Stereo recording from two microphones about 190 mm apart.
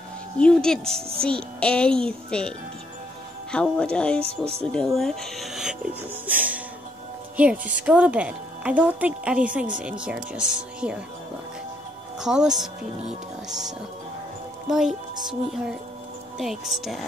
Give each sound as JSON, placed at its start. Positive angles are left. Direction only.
{"t": 0.4, "sound": "a child's voice", "side_deg": 5}
{"t": 3.5, "sound": "a child's voice", "side_deg": 5}
{"t": 4.2, "sound": "speech", "side_deg": -30}
{"t": 4.7, "sound": "a child's voice", "side_deg": 0}
{"t": 6.2, "sound": "music", "side_deg": -10}
{"t": 7.3, "sound": "a child's voice", "side_deg": -5}
{"t": 12.2, "sound": "a child's voice", "side_deg": -5}